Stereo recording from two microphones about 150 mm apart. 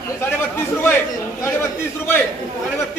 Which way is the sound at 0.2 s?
15° left (ahead or behind).